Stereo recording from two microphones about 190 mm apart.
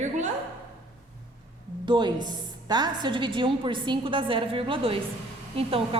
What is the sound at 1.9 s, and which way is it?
A woman's voice, 25° right (ahead or behind).